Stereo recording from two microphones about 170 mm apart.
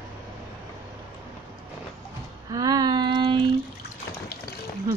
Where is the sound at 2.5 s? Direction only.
20° right (ahead or behind).